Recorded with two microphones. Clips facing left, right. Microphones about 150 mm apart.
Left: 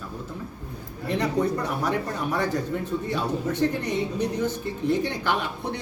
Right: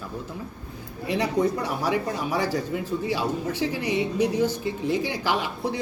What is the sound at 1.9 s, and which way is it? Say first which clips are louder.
Speech: right 1 dB; 10° right (ahead or behind).